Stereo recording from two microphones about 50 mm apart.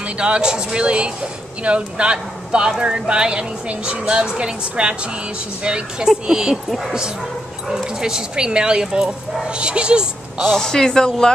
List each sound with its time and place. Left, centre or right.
0.0 s speech: right
7.7 s speech: centre
10.5 s speech: centre